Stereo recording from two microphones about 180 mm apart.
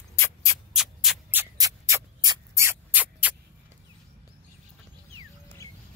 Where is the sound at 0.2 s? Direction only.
20° left (ahead or behind).